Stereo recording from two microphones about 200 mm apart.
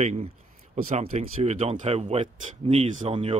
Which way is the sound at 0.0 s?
35° right (ahead or behind).